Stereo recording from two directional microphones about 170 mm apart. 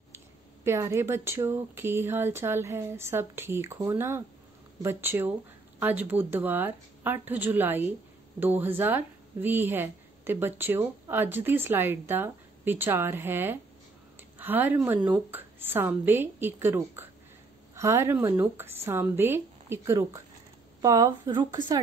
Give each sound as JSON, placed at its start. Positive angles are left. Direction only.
{"t": 0.7, "sound": "speech", "side_deg": -15}